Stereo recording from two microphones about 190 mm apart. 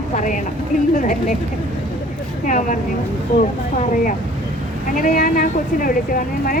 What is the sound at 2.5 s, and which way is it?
Speech, 40° left (ahead or behind).